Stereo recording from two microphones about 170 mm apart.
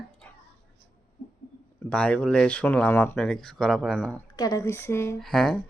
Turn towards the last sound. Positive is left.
turn(degrees=0)  # may be behind; listen again after turning